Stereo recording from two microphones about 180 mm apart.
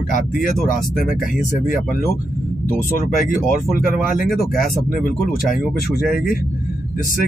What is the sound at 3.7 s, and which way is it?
Speech, 50° left (ahead or behind).